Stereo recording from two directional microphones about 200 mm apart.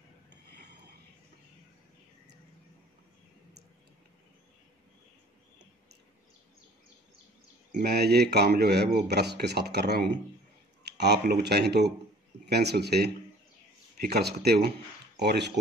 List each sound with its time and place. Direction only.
7.8 s speech: 55° right (ahead or behind)